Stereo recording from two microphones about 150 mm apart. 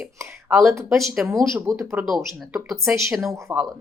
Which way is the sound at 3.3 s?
15° right (ahead or behind).